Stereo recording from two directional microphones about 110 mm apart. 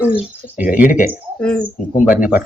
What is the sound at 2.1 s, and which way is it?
Speech, 15° right (ahead or behind).